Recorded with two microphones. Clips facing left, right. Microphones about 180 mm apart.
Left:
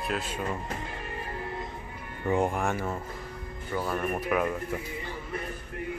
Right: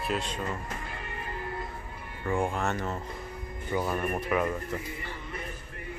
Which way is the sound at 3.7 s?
10° right (ahead or behind).